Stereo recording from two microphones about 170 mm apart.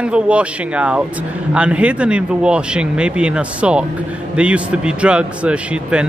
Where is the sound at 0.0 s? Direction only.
5° right (ahead or behind).